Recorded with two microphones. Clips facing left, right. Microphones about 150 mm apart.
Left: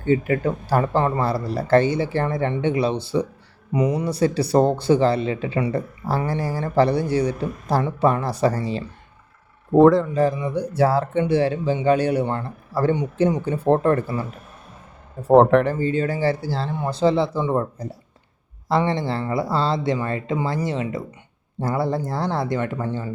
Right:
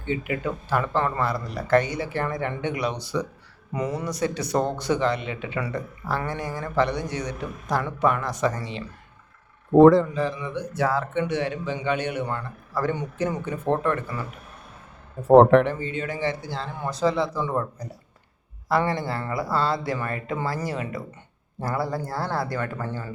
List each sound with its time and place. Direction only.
0.0 s speech: 40° left (ahead or behind)
3.7 s speech: 15° left (ahead or behind)
4.1 s speech: 30° left (ahead or behind)
9.7 s speech: centre (ahead or behind)
10.2 s speech: 40° left (ahead or behind)
15.3 s speech: centre (ahead or behind)
15.7 s speech: 35° left (ahead or behind); by 23.1 s 20° left (ahead or behind)